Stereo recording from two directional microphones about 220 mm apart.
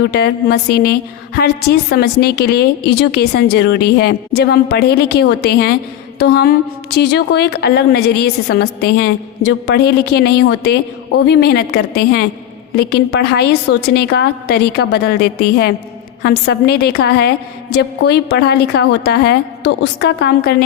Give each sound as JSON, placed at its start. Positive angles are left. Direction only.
{"t": 0.1, "sound": "a woman's voice", "side_deg": 45}